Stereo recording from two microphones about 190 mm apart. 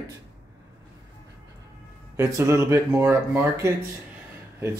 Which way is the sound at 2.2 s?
15° right (ahead or behind).